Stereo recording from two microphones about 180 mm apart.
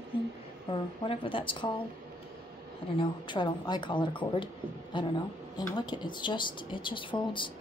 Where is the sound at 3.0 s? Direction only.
25° left (ahead or behind).